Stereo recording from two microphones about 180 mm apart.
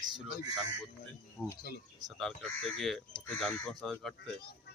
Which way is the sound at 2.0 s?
Centre (ahead or behind).